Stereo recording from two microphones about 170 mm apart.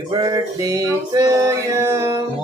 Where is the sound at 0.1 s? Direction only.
25° right (ahead or behind).